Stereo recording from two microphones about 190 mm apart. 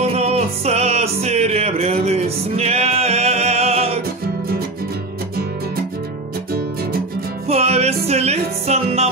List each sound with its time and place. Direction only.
0.0 s music: 35° right (ahead or behind)
7.4 s music: 35° right (ahead or behind)